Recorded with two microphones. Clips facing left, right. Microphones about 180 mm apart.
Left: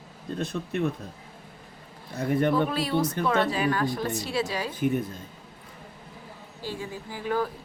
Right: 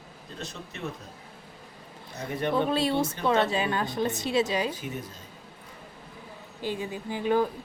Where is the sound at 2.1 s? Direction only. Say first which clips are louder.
Left 6 dB; 55° left (ahead or behind).